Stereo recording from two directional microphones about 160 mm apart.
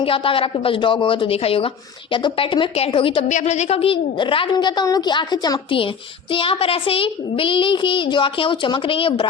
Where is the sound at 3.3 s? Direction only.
45° left (ahead or behind).